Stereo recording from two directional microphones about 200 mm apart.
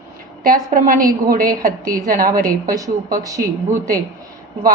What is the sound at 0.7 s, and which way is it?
A woman's voice, 45° right (ahead or behind).